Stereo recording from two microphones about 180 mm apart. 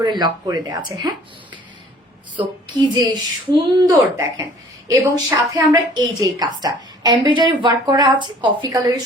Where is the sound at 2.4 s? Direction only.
25° right (ahead or behind).